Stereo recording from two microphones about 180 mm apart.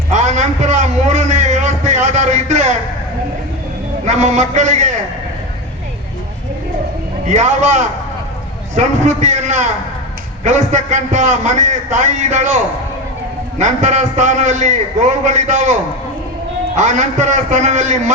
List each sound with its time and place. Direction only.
0.1 s a sound: 40° right (ahead or behind)
4.0 s a man's voice: 40° right (ahead or behind)
7.3 s a man's voice: 40° right (ahead or behind)
13.6 s a man's voice: 40° right (ahead or behind)